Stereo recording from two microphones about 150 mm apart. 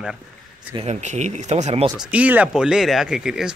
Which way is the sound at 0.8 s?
45° right (ahead or behind).